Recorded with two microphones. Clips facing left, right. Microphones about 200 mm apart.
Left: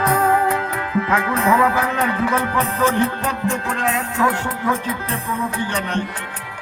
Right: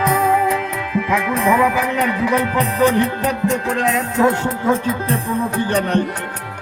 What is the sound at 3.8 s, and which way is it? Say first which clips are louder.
Music: right 4 dB; 20° right (ahead or behind).